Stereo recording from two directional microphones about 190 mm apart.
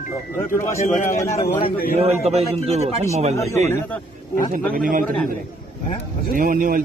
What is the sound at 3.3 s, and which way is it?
Speech, 15° left (ahead or behind).